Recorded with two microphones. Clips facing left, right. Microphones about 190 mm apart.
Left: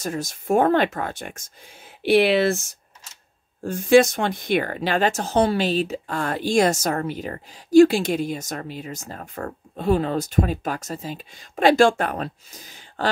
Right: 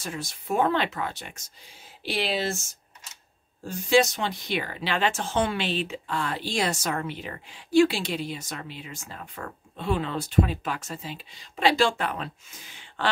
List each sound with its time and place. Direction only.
0.0 s speech: 45° left (ahead or behind)
2.0 s speech: 60° left (ahead or behind)
3.6 s speech: 50° left (ahead or behind)